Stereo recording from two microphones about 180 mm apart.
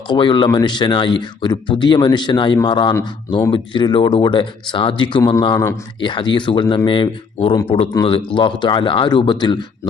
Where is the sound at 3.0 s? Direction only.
15° left (ahead or behind).